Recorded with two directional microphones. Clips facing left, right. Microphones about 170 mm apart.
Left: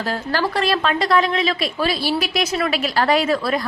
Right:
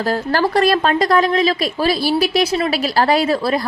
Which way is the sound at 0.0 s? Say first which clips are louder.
Right 4 dB; 40° right (ahead or behind).